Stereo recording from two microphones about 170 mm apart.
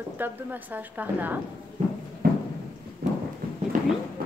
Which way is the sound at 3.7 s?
50° right (ahead or behind).